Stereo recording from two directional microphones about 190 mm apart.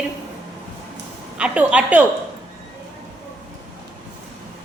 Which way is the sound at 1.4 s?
5° right (ahead or behind).